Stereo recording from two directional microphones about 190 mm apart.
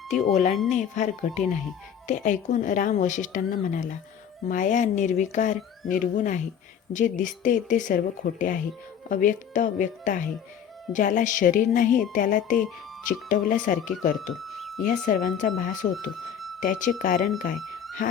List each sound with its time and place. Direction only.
0.1 s speech: 40° left (ahead or behind)
14.3 s a sound: centre (ahead or behind)
14.8 s speech: 45° left (ahead or behind)